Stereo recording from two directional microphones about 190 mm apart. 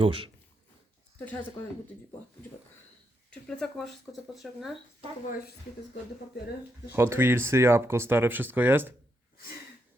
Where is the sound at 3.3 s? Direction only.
5° left (ahead or behind).